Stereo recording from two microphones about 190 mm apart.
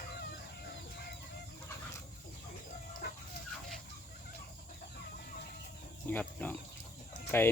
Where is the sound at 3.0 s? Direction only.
60° left (ahead or behind).